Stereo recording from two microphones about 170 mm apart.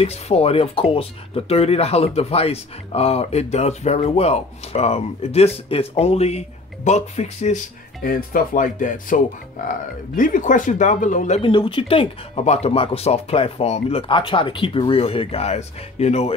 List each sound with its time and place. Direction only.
0.0 s speech: 35° left (ahead or behind)
8.0 s speech: 55° left (ahead or behind)
11.4 s speech: 30° left (ahead or behind)